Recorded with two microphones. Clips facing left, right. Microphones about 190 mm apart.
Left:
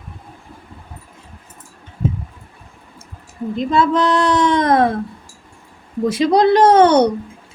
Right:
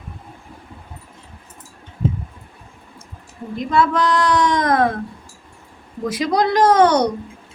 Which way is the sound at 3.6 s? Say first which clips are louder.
Left 2 dB; 25° left (ahead or behind).